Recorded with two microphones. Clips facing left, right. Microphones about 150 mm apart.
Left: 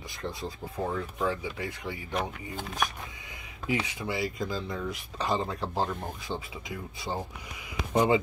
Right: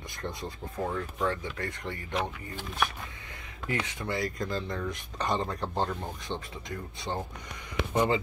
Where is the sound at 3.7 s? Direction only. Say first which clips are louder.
Left 2 dB; 5° left (ahead or behind).